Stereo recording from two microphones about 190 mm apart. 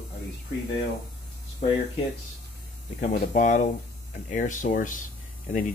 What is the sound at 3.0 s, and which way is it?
Speech, 40° left (ahead or behind).